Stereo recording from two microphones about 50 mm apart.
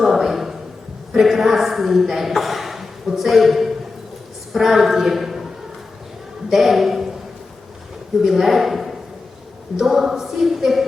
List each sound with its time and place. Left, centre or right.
0.0 s a sound: centre
1.1 s a woman's voice: centre
6.5 s a man's voice: centre
8.2 s a woman's voice: centre